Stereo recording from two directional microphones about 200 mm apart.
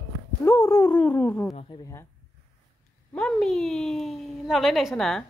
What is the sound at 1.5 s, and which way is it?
Speech, 20° left (ahead or behind).